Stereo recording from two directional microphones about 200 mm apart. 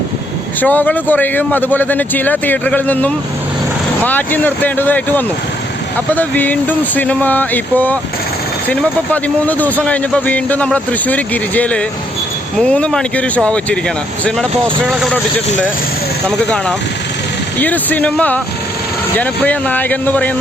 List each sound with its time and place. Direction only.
0.6 s speech: 10° left (ahead or behind)
9.5 s speech: 10° left (ahead or behind)
17.6 s speech: 10° left (ahead or behind)